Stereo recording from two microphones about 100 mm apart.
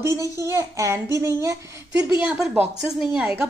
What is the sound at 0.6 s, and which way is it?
Speech, 30° right (ahead or behind).